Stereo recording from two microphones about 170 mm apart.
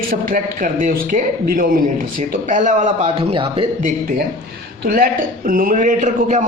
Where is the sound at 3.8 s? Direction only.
55° right (ahead or behind).